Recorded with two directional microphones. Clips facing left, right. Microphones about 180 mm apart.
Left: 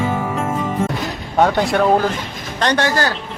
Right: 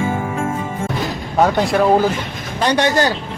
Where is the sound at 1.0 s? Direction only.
Centre (ahead or behind); by 3.1 s 20° right (ahead or behind).